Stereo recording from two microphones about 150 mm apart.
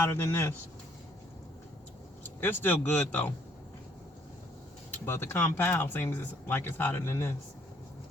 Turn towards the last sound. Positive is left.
turn(degrees=15)  # may be behind; listen again after turning